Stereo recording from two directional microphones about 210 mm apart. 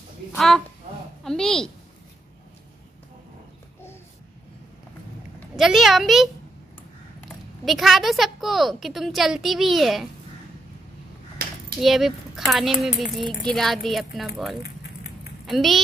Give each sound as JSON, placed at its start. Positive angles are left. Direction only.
{"t": 1.2, "sound": "a woman's voice", "side_deg": 0}
{"t": 5.6, "sound": "a woman's voice", "side_deg": 0}
{"t": 7.6, "sound": "a woman's voice", "side_deg": 0}
{"t": 11.8, "sound": "a woman's voice", "side_deg": 0}
{"t": 14.6, "sound": "vehicle", "side_deg": 55}
{"t": 15.4, "sound": "a woman's voice", "side_deg": 0}